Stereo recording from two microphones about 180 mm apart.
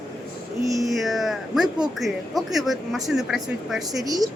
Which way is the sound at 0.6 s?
20° right (ahead or behind).